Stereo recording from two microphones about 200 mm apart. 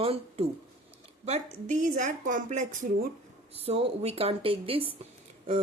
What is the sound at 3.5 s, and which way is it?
Speech, 30° right (ahead or behind).